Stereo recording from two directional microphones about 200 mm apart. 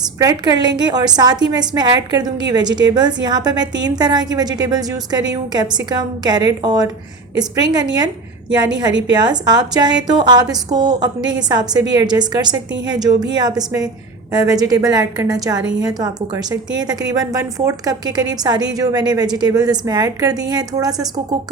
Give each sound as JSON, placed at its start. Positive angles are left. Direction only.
{"t": 0.2, "sound": "a woman's voice", "side_deg": -20}
{"t": 9.1, "sound": "a woman's voice", "side_deg": -20}